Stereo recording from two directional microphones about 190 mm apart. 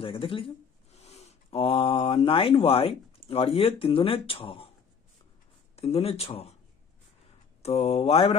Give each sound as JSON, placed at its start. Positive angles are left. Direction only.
{"t": 0.0, "sound": "speech", "side_deg": 30}
{"t": 5.8, "sound": "speech", "side_deg": 30}
{"t": 7.6, "sound": "speech", "side_deg": 30}